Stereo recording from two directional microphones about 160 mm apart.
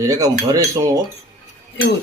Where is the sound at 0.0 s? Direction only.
20° right (ahead or behind).